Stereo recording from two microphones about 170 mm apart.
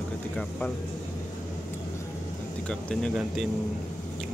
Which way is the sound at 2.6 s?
5° left (ahead or behind).